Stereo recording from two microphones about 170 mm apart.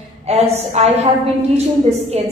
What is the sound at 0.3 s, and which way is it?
A woman's voice, 40° right (ahead or behind).